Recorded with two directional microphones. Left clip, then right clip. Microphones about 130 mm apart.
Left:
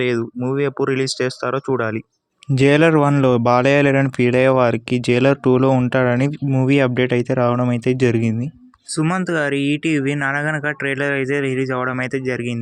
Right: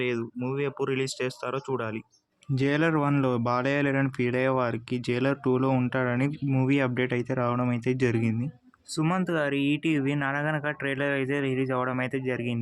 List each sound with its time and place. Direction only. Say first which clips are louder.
0.0 s speech: left 9 dB; 50° left (ahead or behind)
2.6 s speech: left 12 dB; 60° left (ahead or behind); by 8.4 s 45° left (ahead or behind)
9.0 s speech: left 7 dB; 25° left (ahead or behind)